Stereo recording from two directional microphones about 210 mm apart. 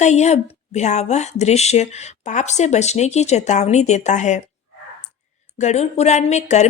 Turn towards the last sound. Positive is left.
turn(degrees=35)  # may be behind; listen again after turning